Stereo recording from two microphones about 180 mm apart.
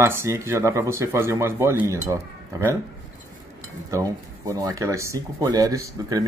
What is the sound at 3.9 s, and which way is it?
Speech, 20° right (ahead or behind).